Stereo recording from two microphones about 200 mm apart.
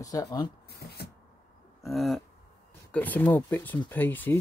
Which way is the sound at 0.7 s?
55° left (ahead or behind).